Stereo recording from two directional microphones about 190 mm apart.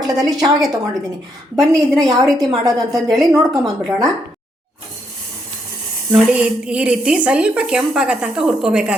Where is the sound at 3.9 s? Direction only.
20° right (ahead or behind).